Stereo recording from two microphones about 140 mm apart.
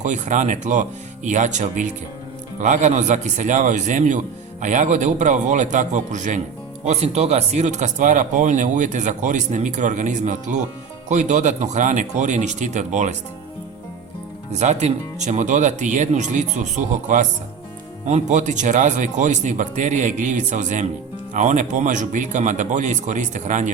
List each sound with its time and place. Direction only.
0.0 s speech: 60° right (ahead or behind)
14.5 s speech: 55° right (ahead or behind)